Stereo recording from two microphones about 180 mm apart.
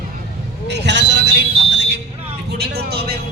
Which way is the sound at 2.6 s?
65° right (ahead or behind).